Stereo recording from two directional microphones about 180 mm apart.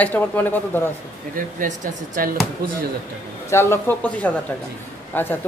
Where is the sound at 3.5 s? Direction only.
15° left (ahead or behind).